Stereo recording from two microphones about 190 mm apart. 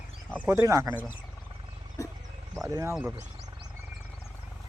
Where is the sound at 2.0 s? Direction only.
15° left (ahead or behind).